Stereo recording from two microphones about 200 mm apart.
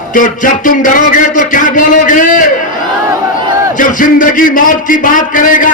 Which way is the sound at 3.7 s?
40° left (ahead or behind).